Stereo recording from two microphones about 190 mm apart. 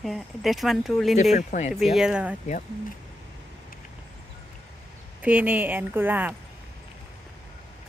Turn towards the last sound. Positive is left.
turn(degrees=-10)  # may be behind; listen again after turning